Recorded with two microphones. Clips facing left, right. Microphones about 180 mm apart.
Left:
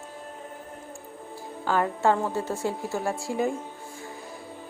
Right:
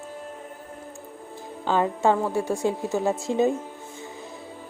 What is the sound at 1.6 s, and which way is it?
A woman's voice, 20° right (ahead or behind).